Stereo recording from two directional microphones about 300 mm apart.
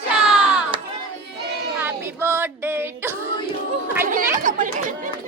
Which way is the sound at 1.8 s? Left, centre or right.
Centre.